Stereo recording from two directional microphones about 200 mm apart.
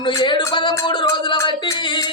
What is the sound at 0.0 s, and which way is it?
Music, 20° left (ahead or behind).